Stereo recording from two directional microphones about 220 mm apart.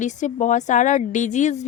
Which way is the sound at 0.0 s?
35° left (ahead or behind).